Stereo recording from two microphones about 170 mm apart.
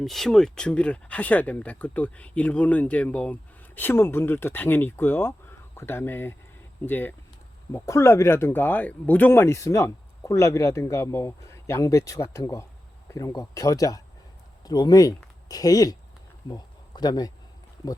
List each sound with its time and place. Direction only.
0.0 s speech: centre (ahead or behind); by 17.3 s 25° left (ahead or behind)